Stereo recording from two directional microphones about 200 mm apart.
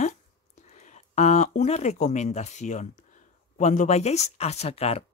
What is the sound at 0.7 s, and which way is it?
Speech, 35° left (ahead or behind).